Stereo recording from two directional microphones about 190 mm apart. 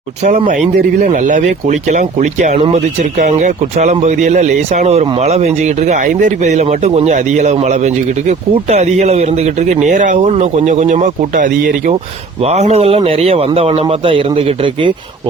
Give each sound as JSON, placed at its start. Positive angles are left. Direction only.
{"t": 0.2, "sound": "speech", "side_deg": -40}